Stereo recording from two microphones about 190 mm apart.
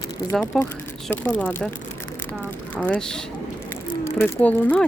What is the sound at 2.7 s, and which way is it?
Speech, 5° left (ahead or behind).